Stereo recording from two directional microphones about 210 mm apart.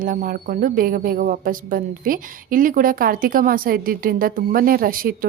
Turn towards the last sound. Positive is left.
turn(degrees=-45)  # may be behind; listen again after turning